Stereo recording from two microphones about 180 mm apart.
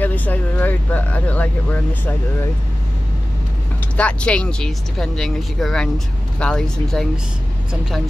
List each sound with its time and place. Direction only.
0.0 s speech: 10° left (ahead or behind)
3.9 s speech: 5° left (ahead or behind)